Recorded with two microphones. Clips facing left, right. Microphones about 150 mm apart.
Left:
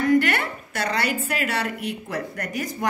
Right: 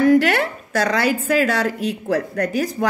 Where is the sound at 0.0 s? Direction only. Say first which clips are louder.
Right 5 dB; 90° right.